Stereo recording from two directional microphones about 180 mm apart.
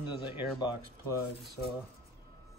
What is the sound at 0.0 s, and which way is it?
Speech, 25° left (ahead or behind).